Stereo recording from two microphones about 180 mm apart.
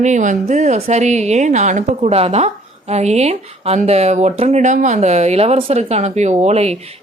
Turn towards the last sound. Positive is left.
turn(degrees=-35)  # may be behind; listen again after turning